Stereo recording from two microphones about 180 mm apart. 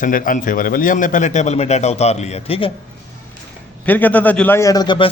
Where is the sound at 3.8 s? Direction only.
10° left (ahead or behind); by 5.1 s 25° left (ahead or behind).